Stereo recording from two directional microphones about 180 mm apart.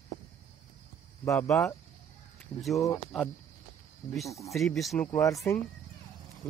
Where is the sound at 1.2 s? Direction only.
15° left (ahead or behind).